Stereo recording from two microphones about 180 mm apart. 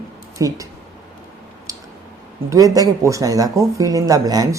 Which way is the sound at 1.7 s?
20° right (ahead or behind).